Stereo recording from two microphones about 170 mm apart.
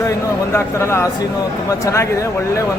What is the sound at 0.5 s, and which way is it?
Speech, 15° left (ahead or behind).